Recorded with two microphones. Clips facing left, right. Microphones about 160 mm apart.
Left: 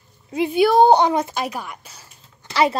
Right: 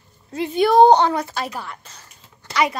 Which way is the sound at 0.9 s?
15° left (ahead or behind).